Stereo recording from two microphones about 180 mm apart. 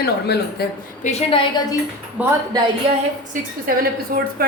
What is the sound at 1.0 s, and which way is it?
Speech, 35° left (ahead or behind).